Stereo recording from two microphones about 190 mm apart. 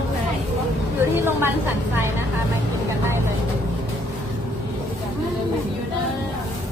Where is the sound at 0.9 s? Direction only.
10° right (ahead or behind).